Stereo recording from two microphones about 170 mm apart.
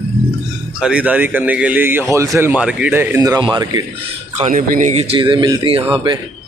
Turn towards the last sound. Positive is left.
turn(degrees=-25)  # may be behind; listen again after turning